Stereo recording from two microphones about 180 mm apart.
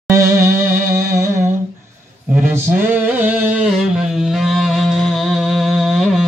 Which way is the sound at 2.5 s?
10° right (ahead or behind).